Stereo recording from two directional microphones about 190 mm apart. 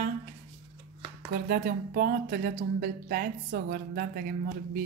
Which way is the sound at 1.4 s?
50° right (ahead or behind).